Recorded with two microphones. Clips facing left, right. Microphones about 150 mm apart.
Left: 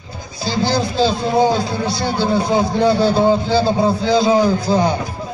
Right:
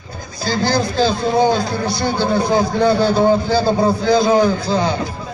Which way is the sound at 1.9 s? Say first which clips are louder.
Right 1 dB; 30° left (ahead or behind).